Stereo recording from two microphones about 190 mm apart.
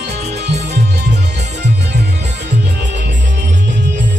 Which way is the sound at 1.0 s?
60° right (ahead or behind).